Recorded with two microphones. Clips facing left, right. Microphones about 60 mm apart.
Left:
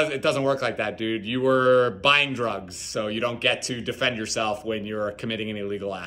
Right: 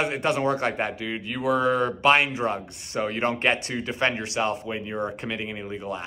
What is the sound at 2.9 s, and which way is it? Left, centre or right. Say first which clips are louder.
Speech: right 1 dB; right.